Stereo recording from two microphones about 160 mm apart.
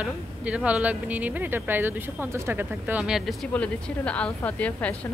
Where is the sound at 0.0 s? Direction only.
5° right (ahead or behind).